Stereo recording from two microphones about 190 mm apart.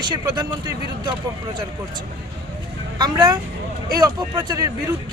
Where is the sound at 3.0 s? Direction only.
20° right (ahead or behind).